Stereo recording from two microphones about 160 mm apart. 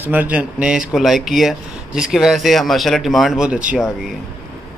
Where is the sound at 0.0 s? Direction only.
10° right (ahead or behind).